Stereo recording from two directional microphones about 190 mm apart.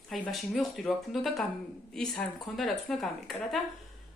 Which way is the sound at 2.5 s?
Centre (ahead or behind).